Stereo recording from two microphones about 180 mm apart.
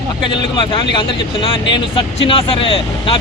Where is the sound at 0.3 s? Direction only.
25° left (ahead or behind).